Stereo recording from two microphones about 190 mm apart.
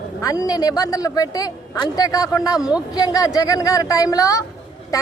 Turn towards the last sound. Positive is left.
turn(degrees=20)  # may be behind; listen again after turning